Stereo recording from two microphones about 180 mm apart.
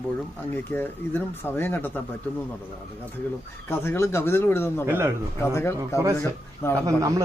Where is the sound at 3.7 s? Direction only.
15° left (ahead or behind).